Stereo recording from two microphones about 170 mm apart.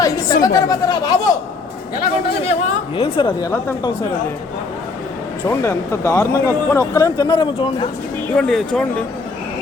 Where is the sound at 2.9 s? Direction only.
30° left (ahead or behind).